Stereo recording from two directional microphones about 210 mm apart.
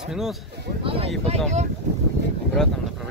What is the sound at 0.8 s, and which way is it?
Speech, 25° right (ahead or behind).